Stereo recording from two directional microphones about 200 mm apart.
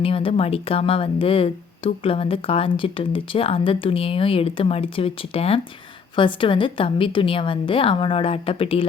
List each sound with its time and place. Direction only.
0.0 s speech: 25° left (ahead or behind)